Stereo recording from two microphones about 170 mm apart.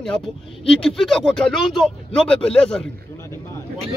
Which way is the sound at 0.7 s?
5° left (ahead or behind).